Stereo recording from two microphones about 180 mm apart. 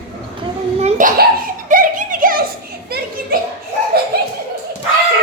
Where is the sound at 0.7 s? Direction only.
40° right (ahead or behind).